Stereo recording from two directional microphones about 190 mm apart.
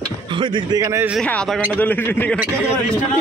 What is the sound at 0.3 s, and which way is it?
Speech, 25° right (ahead or behind).